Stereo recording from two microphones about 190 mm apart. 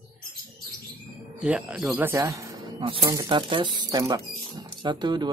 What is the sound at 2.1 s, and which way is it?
Speech, 15° right (ahead or behind).